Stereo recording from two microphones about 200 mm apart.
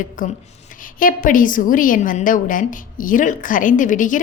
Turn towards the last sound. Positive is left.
turn(degrees=40)  # may be behind; listen again after turning